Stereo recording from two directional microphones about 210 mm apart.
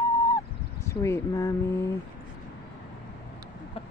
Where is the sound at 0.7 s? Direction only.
15° left (ahead or behind).